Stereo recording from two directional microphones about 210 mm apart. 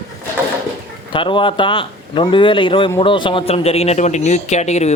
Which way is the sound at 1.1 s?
25° left (ahead or behind).